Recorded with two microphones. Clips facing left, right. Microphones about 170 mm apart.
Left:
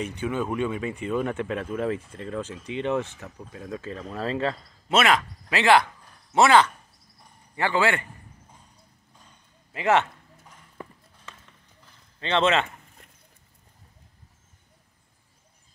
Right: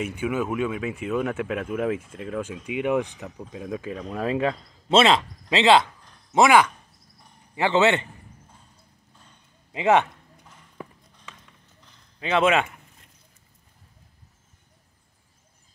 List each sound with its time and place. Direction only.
0.0 s speech: 10° right (ahead or behind)
4.8 s a man's voice: 25° right (ahead or behind)
9.7 s speech: 15° right (ahead or behind)
10.8 s run: 10° right (ahead or behind)
12.2 s speech: 10° right (ahead or behind)